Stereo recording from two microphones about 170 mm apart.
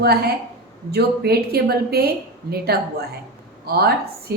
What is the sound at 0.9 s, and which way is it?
A woman's voice, 70° right (ahead or behind).